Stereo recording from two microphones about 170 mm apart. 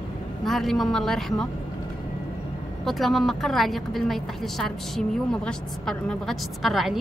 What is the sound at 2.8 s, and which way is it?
A woman's voice, centre (ahead or behind).